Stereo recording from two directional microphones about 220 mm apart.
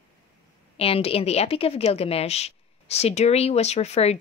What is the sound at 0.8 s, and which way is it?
Speech, 25° left (ahead or behind).